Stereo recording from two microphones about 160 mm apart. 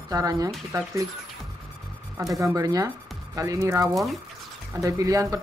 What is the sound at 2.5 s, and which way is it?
Speech, 20° right (ahead or behind).